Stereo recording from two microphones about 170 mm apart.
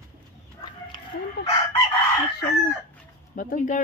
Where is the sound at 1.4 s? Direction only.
70° left (ahead or behind).